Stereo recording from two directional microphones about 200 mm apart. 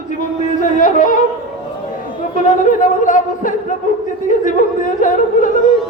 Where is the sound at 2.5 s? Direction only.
40° left (ahead or behind).